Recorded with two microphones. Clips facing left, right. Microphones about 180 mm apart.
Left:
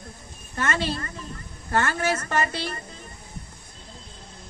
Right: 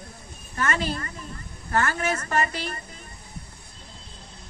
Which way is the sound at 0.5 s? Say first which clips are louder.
Even; 30° left (ahead or behind).